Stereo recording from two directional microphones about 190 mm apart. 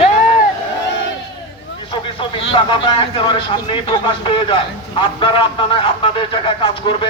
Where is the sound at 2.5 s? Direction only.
30° left (ahead or behind).